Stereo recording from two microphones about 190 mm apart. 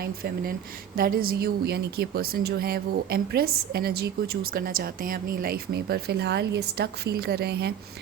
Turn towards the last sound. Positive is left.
turn(degrees=-55)  # may be behind; listen again after turning